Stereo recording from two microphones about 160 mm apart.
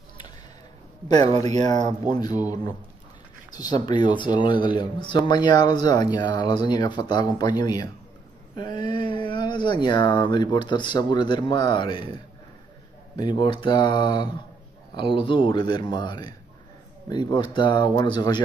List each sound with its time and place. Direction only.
1.0 s speech: 40° right (ahead or behind)
2.0 s speech: 25° left (ahead or behind)
3.5 s speech: 25° left (ahead or behind)
13.1 s speech: 30° left (ahead or behind)